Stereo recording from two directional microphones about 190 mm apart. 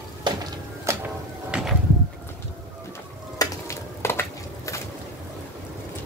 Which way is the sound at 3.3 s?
15° left (ahead or behind).